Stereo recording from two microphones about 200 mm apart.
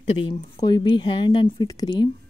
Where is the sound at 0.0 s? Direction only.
30° left (ahead or behind).